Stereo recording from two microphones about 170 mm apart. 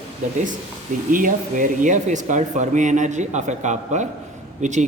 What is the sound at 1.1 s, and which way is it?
Speech, 50° right (ahead or behind).